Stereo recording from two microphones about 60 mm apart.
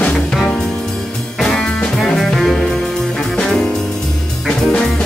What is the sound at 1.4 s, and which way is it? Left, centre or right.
Music, centre.